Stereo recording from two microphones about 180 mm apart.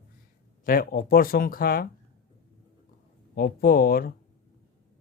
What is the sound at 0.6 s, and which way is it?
Speech, 55° left (ahead or behind).